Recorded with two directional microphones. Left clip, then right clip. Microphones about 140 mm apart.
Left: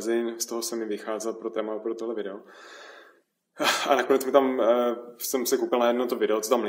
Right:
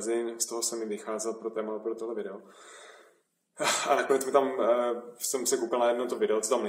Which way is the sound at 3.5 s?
25° left (ahead or behind).